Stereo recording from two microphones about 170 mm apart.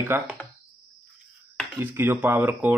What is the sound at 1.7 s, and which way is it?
Speech, 10° right (ahead or behind).